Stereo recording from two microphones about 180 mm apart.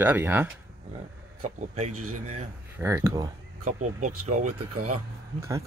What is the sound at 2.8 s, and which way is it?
Speech, 15° right (ahead or behind).